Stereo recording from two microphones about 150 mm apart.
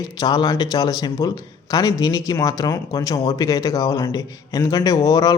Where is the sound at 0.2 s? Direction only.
25° left (ahead or behind).